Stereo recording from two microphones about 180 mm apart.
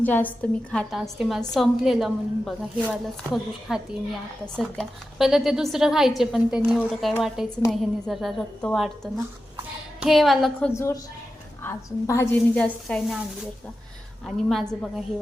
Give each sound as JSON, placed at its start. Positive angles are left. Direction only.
{"t": 0.0, "sound": "a woman's voice", "side_deg": 10}
{"t": 10.0, "sound": "a woman's voice", "side_deg": 0}
{"t": 10.7, "sound": "a woman's voice", "side_deg": 15}
{"t": 14.3, "sound": "a woman's voice", "side_deg": 5}